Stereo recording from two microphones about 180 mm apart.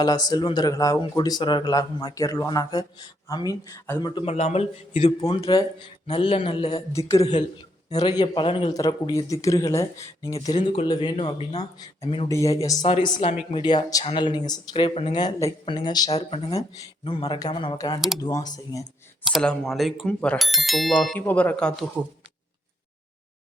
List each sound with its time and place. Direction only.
0.0 s speech: 20° left (ahead or behind)
4.3 s speech: 35° left (ahead or behind)
7.1 s speech: 20° left (ahead or behind)
10.6 s speech: 35° left (ahead or behind); by 18.9 s 20° left (ahead or behind)
19.2 s speech: centre (ahead or behind)